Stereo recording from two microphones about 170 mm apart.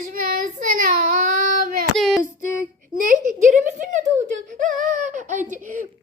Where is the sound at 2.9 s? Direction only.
50° right (ahead or behind).